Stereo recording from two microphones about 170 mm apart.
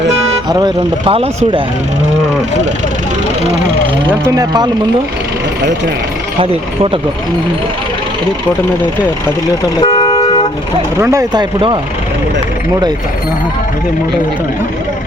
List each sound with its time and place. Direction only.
0.4 s speech: 25° right (ahead or behind)
4.3 s speech: 25° right (ahead or behind)
6.4 s speech: 35° right (ahead or behind)
9.8 s toot: 30° left (ahead or behind)
11.0 s speech: 20° right (ahead or behind)